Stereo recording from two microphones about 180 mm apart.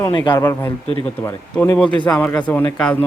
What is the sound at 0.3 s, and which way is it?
Speech, 15° left (ahead or behind).